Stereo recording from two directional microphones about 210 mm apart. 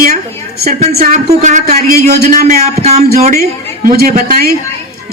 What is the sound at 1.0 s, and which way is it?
Speech, 35° right (ahead or behind).